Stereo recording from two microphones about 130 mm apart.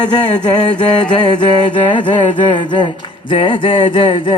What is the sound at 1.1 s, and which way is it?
Mantra, 35° left (ahead or behind).